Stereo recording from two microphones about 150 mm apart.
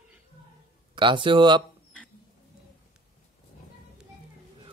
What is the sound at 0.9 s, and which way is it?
Speech, 35° right (ahead or behind).